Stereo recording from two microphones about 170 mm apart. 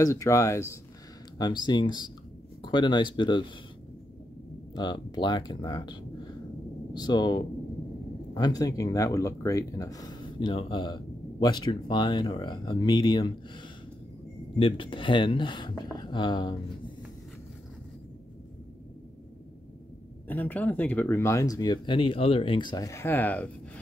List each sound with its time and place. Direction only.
0.0 s speech: 20° left (ahead or behind)
4.7 s speech: 25° left (ahead or behind)
14.6 s speech: 30° left (ahead or behind)
20.2 s speech: 10° left (ahead or behind)